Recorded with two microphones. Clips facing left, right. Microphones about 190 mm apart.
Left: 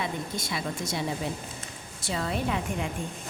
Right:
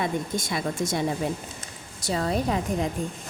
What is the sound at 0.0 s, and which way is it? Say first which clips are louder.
A woman's voice: right 5 dB; 50° right (ahead or behind).